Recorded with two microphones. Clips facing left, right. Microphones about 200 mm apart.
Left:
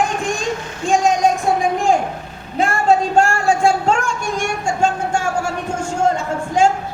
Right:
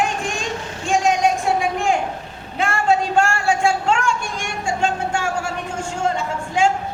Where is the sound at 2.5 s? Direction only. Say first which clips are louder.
Left 3 dB; 35° left (ahead or behind).